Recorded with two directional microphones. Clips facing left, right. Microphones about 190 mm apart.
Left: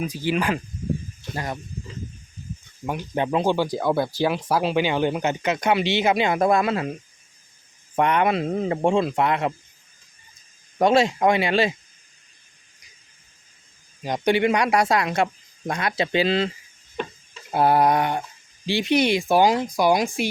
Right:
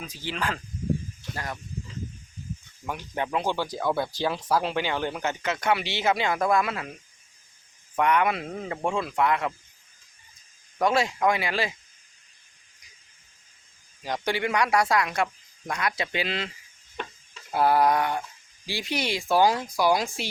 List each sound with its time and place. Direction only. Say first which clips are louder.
0.0 s speech: left 8 dB; 15° left (ahead or behind)
2.8 s speech: left 6 dB; 20° left (ahead or behind)
7.9 s speech: left 3 dB; 25° left (ahead or behind)
10.8 s speech: left 6 dB; 25° left (ahead or behind)
14.0 s speech: left 7 dB; 20° left (ahead or behind)
17.5 s speech: left 3 dB; 25° left (ahead or behind)